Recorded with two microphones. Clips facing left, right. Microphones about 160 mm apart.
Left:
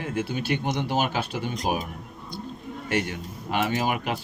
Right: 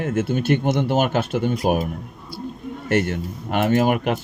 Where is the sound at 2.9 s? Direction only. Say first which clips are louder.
Right 7 dB; 55° right (ahead or behind).